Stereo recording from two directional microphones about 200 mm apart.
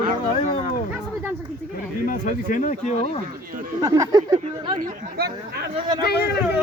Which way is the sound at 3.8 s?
15° right (ahead or behind).